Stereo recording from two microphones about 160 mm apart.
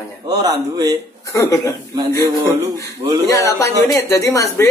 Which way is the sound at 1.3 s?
20° left (ahead or behind).